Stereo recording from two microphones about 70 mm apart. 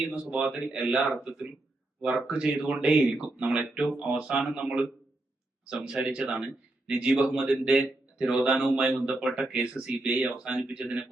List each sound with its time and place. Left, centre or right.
0.0 s a man's voice: centre
7.2 s speech: centre
8.8 s speech: centre
9.0 s speech: centre